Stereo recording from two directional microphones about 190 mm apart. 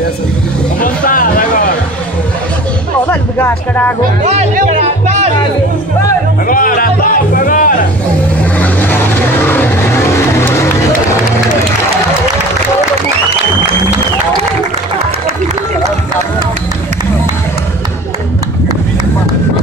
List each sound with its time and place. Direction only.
0.7 s music: 45° left (ahead or behind)
3.1 s speech: 10° left (ahead or behind)
4.2 s music: 40° right (ahead or behind)
6.4 s music: 45° left (ahead or behind)
8.5 s vehicle: 10° left (ahead or behind)
9.5 s music: 10° left (ahead or behind)